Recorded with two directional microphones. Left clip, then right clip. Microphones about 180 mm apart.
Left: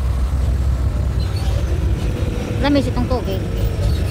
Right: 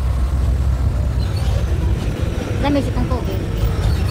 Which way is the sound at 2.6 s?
10° left (ahead or behind).